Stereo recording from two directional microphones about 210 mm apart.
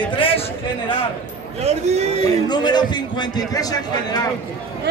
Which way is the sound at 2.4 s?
20° left (ahead or behind).